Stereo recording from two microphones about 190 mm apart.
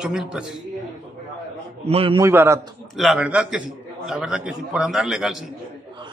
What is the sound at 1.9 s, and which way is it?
Speech, 30° right (ahead or behind).